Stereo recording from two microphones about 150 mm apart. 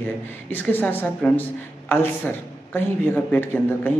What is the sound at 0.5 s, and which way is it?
Speech, 10° left (ahead or behind).